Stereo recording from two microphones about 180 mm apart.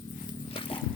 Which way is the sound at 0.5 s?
30° left (ahead or behind).